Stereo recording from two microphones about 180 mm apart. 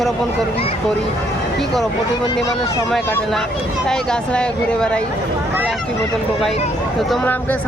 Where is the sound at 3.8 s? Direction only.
5° left (ahead or behind).